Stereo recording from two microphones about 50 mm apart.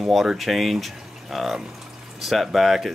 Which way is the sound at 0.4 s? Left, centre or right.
Centre.